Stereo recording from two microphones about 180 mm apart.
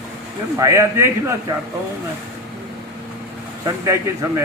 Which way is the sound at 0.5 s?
15° right (ahead or behind).